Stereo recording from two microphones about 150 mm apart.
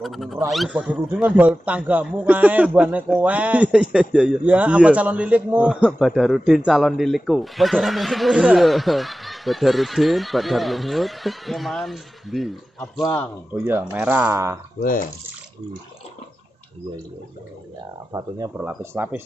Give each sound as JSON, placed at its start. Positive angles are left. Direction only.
{"t": 0.0, "sound": "a man's voice", "side_deg": 0}
{"t": 13.7, "sound": "speech", "side_deg": -10}
{"t": 14.8, "sound": "speech", "side_deg": 65}
{"t": 18.8, "sound": "speech", "side_deg": -15}